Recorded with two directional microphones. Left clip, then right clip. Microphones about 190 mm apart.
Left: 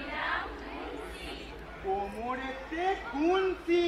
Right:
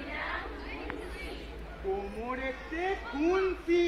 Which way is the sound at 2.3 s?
25° left (ahead or behind).